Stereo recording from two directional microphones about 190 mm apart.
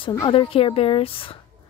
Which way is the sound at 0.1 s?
25° left (ahead or behind).